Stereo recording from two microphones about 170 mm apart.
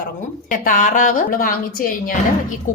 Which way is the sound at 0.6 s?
50° left (ahead or behind).